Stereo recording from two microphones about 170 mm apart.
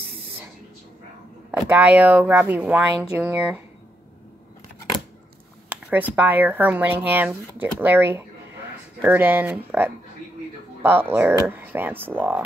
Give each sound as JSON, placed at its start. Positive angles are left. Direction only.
{"t": 1.5, "sound": "speech", "side_deg": -10}
{"t": 5.7, "sound": "a sound", "side_deg": -10}
{"t": 6.1, "sound": "speech", "side_deg": -10}